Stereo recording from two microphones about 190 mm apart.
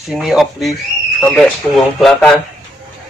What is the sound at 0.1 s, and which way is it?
Speech, centre (ahead or behind).